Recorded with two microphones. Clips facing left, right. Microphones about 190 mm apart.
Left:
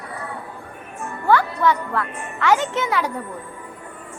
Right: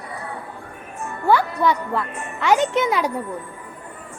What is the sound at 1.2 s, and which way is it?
Speech, 15° right (ahead or behind).